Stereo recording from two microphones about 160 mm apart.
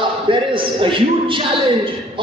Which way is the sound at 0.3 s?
30° right (ahead or behind).